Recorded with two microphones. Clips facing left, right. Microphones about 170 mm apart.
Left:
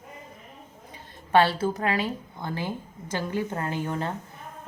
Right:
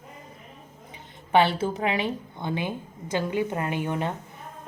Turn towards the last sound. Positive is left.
turn(degrees=-20)  # may be behind; listen again after turning